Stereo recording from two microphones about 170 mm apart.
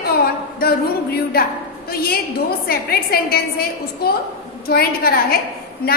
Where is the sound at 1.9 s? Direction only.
65° left (ahead or behind).